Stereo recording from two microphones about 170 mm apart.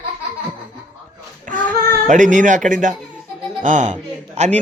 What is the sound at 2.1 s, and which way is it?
A man's voice, 50° right (ahead or behind).